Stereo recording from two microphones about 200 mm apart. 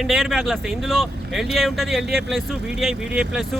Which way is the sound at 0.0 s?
Centre (ahead or behind).